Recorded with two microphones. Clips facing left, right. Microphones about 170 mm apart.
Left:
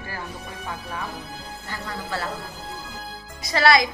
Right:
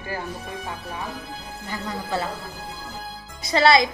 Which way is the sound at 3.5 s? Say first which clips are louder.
Right 2 dB; 25° right (ahead or behind).